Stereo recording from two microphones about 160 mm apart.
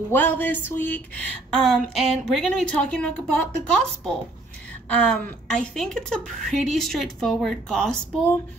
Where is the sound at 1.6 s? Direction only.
Centre (ahead or behind).